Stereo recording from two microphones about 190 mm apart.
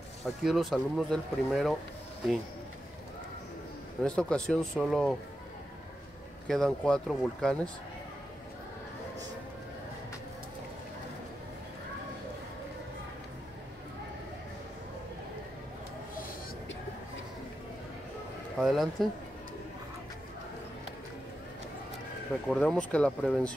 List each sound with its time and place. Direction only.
0.4 s speech: centre (ahead or behind)
4.0 s speech: 5° left (ahead or behind)
6.4 s speech: centre (ahead or behind)
18.6 s speech: centre (ahead or behind)
22.5 s speech: 5° left (ahead or behind)